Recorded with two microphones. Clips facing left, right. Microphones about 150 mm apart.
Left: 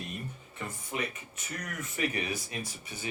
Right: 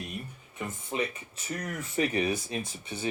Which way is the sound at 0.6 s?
25° right (ahead or behind).